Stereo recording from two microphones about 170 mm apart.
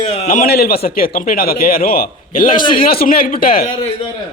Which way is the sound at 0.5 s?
65° left (ahead or behind).